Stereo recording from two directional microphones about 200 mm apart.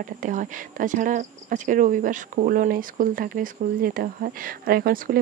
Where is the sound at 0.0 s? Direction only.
40° right (ahead or behind).